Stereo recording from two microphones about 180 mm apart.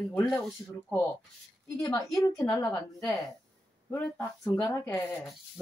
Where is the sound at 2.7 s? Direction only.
Centre (ahead or behind).